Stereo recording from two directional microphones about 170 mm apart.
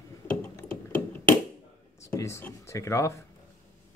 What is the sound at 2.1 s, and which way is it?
Speech, 15° left (ahead or behind).